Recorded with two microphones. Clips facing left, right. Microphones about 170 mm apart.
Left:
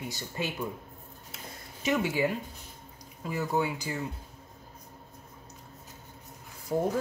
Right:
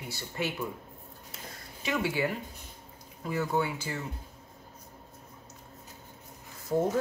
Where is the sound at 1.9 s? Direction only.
20° left (ahead or behind).